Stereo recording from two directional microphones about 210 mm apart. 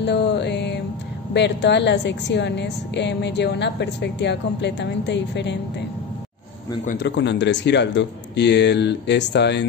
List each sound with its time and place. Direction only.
0.0 s music: 55° left (ahead or behind)
1.3 s a woman's voice: 55° left (ahead or behind)
6.9 s a woman's voice: 55° left (ahead or behind)